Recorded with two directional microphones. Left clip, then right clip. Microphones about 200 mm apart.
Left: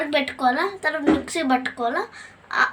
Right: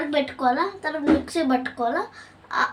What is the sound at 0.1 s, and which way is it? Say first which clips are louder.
Speech: even; 20° left (ahead or behind).